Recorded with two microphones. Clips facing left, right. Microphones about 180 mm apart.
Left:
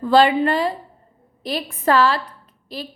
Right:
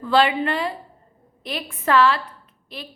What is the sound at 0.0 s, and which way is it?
A woman's voice, 40° left (ahead or behind).